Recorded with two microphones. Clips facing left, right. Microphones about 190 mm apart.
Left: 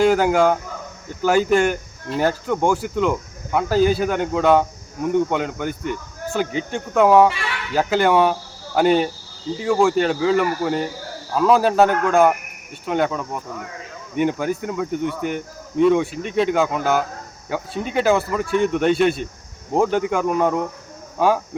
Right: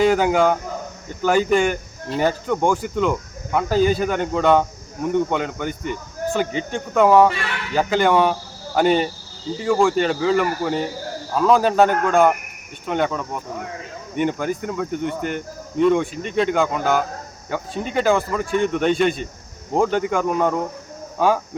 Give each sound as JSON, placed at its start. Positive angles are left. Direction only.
{"t": 0.0, "sound": "speech", "side_deg": 0}